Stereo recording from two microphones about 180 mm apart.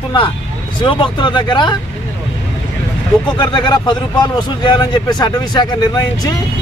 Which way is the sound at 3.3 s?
25° left (ahead or behind).